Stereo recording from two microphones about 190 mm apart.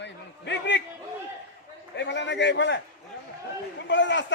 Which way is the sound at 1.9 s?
65° left (ahead or behind).